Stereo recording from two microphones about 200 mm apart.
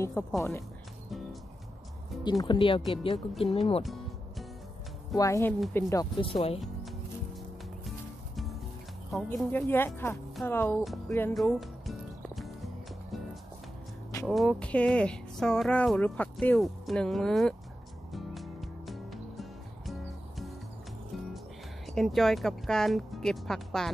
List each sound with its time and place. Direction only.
0.3 s speech: centre (ahead or behind)
2.2 s speech: 20° left (ahead or behind)
3.8 s music: centre (ahead or behind)
5.1 s speech: 15° left (ahead or behind)
6.6 s music: centre (ahead or behind)
9.1 s speech: centre (ahead or behind)
11.1 s music: 10° left (ahead or behind)
14.2 s speech: centre (ahead or behind)
18.1 s music: centre (ahead or behind)
21.9 s speech: centre (ahead or behind)